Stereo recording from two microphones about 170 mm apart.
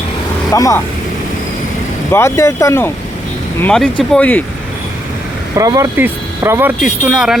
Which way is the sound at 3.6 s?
5° left (ahead or behind).